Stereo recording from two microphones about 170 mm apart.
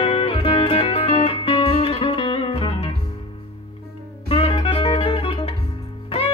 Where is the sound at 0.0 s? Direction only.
35° left (ahead or behind).